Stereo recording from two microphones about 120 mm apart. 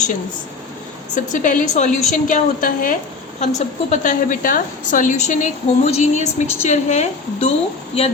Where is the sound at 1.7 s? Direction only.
80° left.